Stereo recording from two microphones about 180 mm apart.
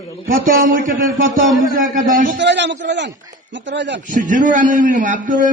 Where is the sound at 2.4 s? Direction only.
75° right (ahead or behind).